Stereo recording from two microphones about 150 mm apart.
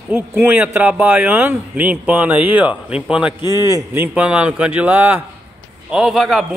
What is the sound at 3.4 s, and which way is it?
A man's voice, 20° right (ahead or behind).